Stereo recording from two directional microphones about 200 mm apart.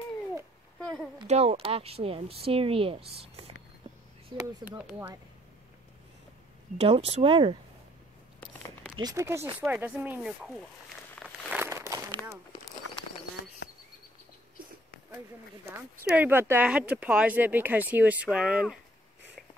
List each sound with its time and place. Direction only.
0.7 s a sound: centre (ahead or behind)
1.2 s speech: 30° right (ahead or behind)
4.4 s speech: 10° right (ahead or behind)
6.8 s speech: 30° right (ahead or behind)
8.4 s a sound: 5° left (ahead or behind)
8.9 s speech: 15° right (ahead or behind)
11.1 s a sound: 5° left (ahead or behind)
11.5 s crumpling: 10° right (ahead or behind)
16.1 s speech: 10° right (ahead or behind)